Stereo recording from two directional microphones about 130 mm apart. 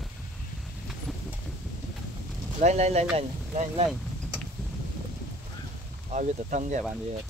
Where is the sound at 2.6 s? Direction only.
60° right (ahead or behind).